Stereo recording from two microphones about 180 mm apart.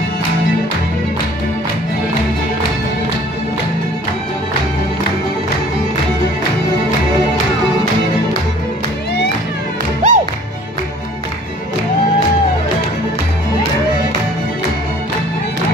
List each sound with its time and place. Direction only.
10.0 s music: 45° right (ahead or behind)